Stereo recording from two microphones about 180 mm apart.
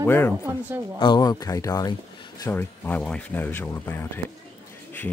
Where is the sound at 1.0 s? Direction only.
25° left (ahead or behind).